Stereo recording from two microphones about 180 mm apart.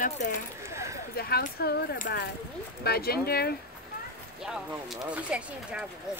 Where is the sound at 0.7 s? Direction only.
15° right (ahead or behind).